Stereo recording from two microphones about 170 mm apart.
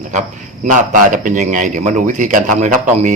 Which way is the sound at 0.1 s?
45° right (ahead or behind).